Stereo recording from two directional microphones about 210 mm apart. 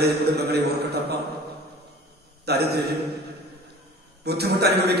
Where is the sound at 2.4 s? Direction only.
50° right (ahead or behind).